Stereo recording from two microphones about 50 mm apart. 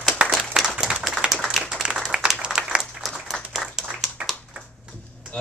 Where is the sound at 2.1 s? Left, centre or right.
Centre.